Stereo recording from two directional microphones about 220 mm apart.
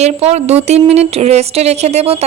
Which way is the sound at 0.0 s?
30° right (ahead or behind).